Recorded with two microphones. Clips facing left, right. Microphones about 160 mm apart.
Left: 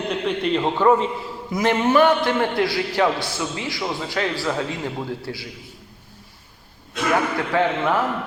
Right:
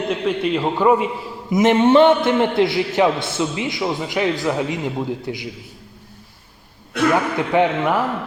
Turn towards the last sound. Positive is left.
turn(degrees=-15)  # may be behind; listen again after turning